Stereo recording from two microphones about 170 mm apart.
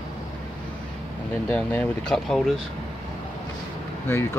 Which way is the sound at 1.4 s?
10° left (ahead or behind).